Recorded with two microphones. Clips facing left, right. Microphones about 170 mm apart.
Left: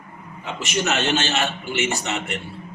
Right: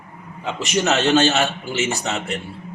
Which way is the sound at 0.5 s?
35° right (ahead or behind).